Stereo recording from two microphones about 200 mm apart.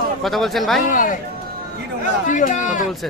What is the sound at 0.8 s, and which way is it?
Speech, 40° left (ahead or behind).